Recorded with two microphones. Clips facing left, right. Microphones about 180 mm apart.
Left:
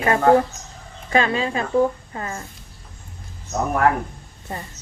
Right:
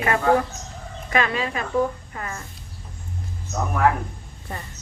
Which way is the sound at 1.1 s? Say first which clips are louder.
Left 3 dB; 30° left (ahead or behind).